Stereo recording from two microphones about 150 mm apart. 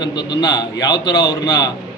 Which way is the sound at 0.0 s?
30° left (ahead or behind).